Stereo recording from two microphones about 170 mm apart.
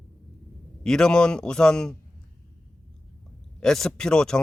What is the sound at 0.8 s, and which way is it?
Speech, 5° left (ahead or behind).